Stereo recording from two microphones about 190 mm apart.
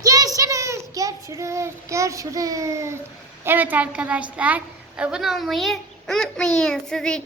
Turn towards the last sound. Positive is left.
turn(degrees=5)  # may be behind; listen again after turning